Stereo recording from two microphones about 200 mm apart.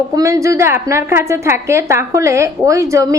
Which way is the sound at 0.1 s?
15° right (ahead or behind).